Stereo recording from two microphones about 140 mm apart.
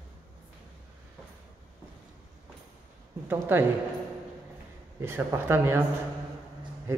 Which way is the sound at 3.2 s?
15° right (ahead or behind).